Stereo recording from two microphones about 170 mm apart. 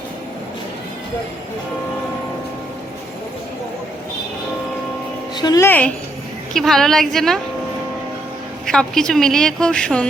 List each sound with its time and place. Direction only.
5.4 s speech: 25° left (ahead or behind)
5.6 s a woman's voice: 10° left (ahead or behind)
8.6 s a woman's voice: 5° left (ahead or behind)